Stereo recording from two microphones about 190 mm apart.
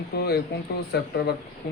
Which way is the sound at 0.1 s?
60° left (ahead or behind).